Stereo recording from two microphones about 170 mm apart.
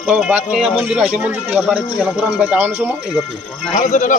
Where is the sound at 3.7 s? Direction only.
45° left (ahead or behind).